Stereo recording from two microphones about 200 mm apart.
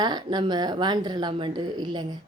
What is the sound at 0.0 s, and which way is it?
A woman's voice, 20° right (ahead or behind).